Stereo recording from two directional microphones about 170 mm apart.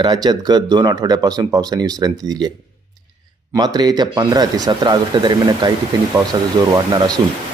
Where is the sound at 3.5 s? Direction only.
25° right (ahead or behind).